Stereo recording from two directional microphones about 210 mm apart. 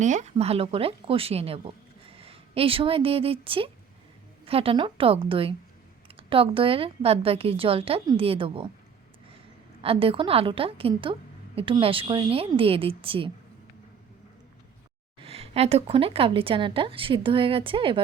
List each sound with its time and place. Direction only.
0.0 s a woman's voice: 35° right (ahead or behind)
9.8 s a woman's voice: 25° right (ahead or behind)
15.2 s a woman's voice: 30° right (ahead or behind)